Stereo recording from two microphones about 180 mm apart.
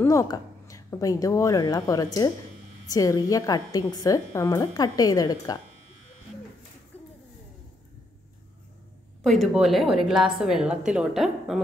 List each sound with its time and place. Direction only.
0.0 s a woman's voice: 15° left (ahead or behind)
9.2 s a woman's voice: centre (ahead or behind)